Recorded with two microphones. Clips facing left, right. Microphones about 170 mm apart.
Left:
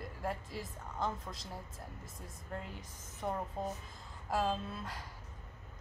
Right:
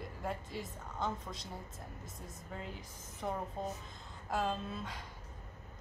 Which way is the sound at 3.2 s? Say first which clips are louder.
Left 1 dB; centre (ahead or behind).